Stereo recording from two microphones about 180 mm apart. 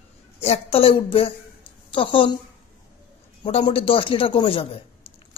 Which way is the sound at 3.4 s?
30° left (ahead or behind).